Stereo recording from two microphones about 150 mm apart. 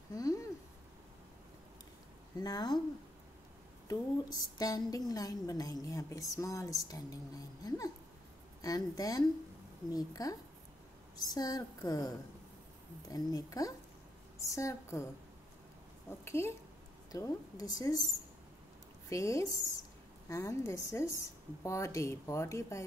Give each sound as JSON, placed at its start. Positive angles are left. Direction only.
{"t": 0.1, "sound": "a sound", "side_deg": 25}
{"t": 2.3, "sound": "a woman's voice", "side_deg": 25}
{"t": 3.8, "sound": "a woman's voice", "side_deg": 25}
{"t": 13.1, "sound": "a woman's voice", "side_deg": 25}
{"t": 16.1, "sound": "a woman's voice", "side_deg": 15}
{"t": 19.0, "sound": "a woman's voice", "side_deg": 20}